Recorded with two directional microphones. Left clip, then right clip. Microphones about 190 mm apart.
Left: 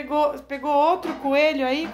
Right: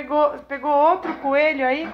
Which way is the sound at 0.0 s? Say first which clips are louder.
Right 3 dB; 5° left (ahead or behind).